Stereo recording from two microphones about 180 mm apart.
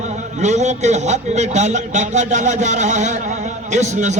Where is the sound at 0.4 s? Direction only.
40° right (ahead or behind).